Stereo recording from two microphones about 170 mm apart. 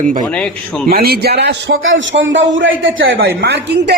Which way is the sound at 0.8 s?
60° right (ahead or behind).